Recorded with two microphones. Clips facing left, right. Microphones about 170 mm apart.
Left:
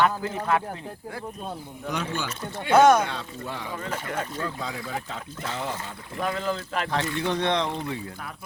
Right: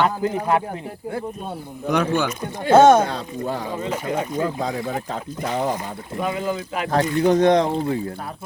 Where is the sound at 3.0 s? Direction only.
40° right (ahead or behind).